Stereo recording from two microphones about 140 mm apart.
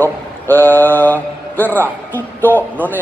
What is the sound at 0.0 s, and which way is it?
A man's voice, 15° left (ahead or behind).